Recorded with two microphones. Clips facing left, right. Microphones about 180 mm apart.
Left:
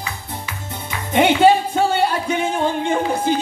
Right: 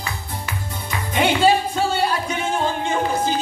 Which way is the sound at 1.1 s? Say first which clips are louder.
Left 4 dB; 55° left (ahead or behind).